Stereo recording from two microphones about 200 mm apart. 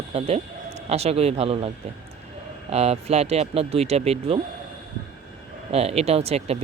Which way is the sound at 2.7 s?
30° right (ahead or behind).